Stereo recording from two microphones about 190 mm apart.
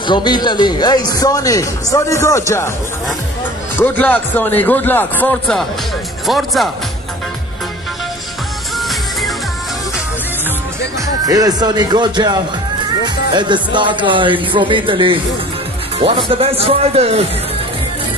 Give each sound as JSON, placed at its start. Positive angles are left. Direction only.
{"t": 0.0, "sound": "a man's voice", "side_deg": 25}
{"t": 3.8, "sound": "a man's voice", "side_deg": 10}
{"t": 11.2, "sound": "speech", "side_deg": -20}